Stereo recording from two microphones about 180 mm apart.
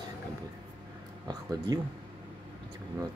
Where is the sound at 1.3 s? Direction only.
20° right (ahead or behind).